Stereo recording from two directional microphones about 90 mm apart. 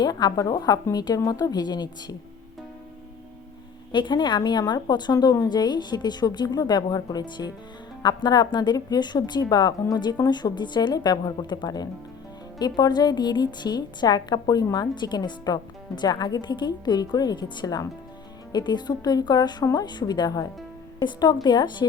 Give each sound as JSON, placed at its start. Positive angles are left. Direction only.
{"t": 0.0, "sound": "a woman's voice", "side_deg": 45}
{"t": 3.9, "sound": "a woman's voice", "side_deg": 55}